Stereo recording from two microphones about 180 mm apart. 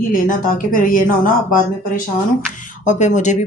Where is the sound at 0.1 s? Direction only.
50° left (ahead or behind).